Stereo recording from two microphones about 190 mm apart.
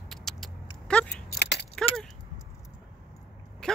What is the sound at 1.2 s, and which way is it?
Keys jangling, 60° left (ahead or behind).